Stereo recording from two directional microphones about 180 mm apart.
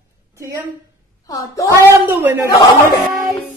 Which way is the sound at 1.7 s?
15° right (ahead or behind).